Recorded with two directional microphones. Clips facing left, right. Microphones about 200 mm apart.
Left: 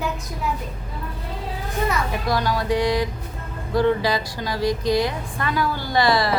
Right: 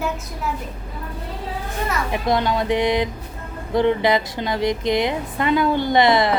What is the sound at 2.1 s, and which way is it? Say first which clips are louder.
A woman's voice: right 3 dB; 20° right (ahead or behind).